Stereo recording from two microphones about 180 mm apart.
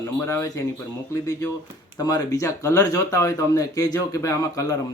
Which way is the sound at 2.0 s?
20° left (ahead or behind).